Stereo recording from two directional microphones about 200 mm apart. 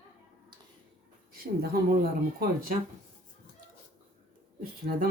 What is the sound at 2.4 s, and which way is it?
Speech, 45° right (ahead or behind).